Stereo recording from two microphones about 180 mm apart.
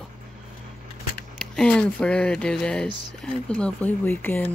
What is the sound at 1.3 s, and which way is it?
Speech, 5° left (ahead or behind).